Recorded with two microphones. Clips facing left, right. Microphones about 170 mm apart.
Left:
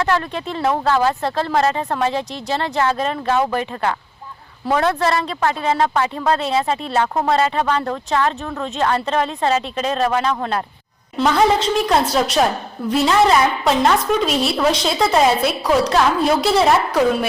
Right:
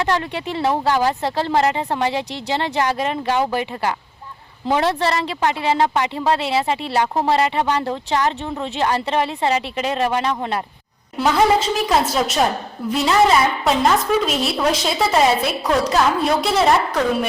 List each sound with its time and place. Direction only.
0.0 s speech: 15° right (ahead or behind)
4.6 s a woman's voice: 20° right (ahead or behind)
11.2 s a woman's voice: 5° right (ahead or behind)